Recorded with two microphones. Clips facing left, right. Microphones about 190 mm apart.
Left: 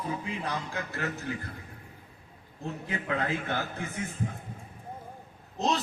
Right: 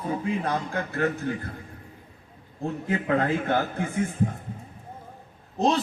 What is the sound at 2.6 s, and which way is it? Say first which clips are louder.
A man's voice: right 7 dB; 50° right (ahead or behind).